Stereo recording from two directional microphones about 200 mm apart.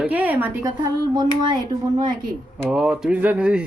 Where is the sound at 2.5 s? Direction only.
5° right (ahead or behind).